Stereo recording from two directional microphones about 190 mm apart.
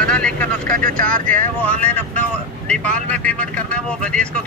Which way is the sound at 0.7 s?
45° right (ahead or behind).